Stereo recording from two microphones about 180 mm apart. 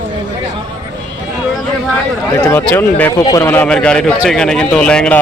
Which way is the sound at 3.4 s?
10° left (ahead or behind).